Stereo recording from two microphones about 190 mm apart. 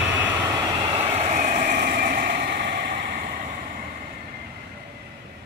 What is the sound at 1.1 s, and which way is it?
Vehicle, 35° right (ahead or behind).